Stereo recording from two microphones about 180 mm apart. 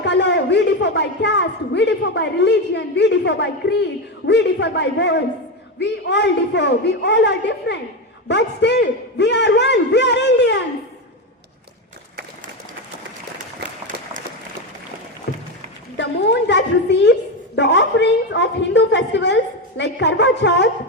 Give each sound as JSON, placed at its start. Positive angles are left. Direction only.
{"t": 0.0, "sound": "a man's voice", "side_deg": 75}
{"t": 13.8, "sound": "run", "side_deg": -45}
{"t": 16.0, "sound": "a woman's voice", "side_deg": 75}